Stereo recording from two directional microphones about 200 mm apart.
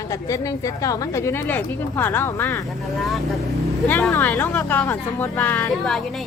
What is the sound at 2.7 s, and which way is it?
A woman's voice, centre (ahead or behind).